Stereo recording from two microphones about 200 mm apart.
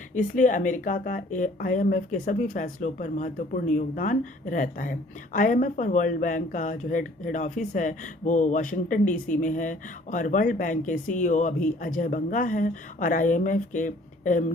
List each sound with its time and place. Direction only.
0.1 s speech: 40° left (ahead or behind)